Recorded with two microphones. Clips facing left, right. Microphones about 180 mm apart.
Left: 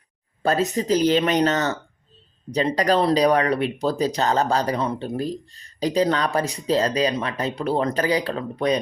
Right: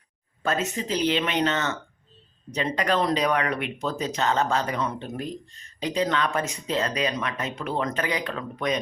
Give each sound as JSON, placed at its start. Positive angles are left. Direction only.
{"t": 0.4, "sound": "speech", "side_deg": 35}